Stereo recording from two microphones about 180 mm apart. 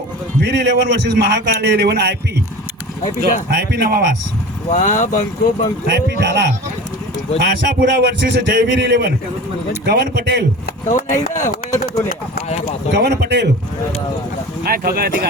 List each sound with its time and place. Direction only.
0.4 s a man's voice: 75° right (ahead or behind)
3.5 s a man's voice: 65° right (ahead or behind)
4.7 s speech: 45° left (ahead or behind)
6.1 s a man's voice: 70° right (ahead or behind)
7.8 s a man's voice: 70° right (ahead or behind)
10.8 s speech: 45° left (ahead or behind)
12.9 s a man's voice: 65° right (ahead or behind)
14.6 s speech: 55° right (ahead or behind)